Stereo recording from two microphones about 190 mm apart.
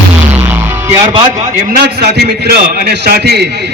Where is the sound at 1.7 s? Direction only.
55° right (ahead or behind).